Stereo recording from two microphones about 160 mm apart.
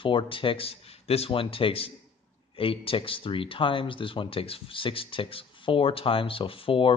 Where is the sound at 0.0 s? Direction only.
30° left (ahead or behind).